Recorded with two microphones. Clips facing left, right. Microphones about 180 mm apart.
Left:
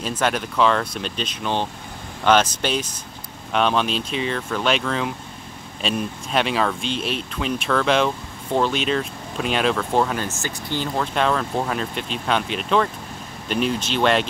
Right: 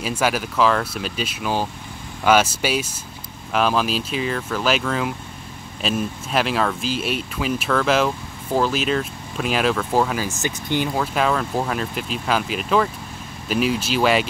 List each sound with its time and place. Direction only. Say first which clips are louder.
0.0 s speech: right 1 dB; 10° right (ahead or behind)
10.4 s speech: right 4 dB; 15° right (ahead or behind)
11.0 s speech: left 3 dB; 5° right (ahead or behind)